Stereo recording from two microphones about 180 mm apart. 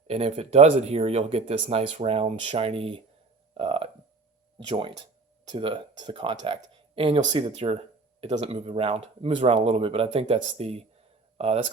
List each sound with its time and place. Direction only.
0.1 s speech: 35° right (ahead or behind)